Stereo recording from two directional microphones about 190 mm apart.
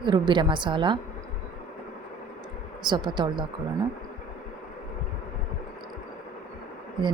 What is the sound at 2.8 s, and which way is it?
Speech, 25° right (ahead or behind).